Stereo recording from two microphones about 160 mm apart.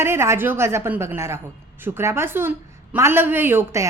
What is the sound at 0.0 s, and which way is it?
Speech, 15° right (ahead or behind).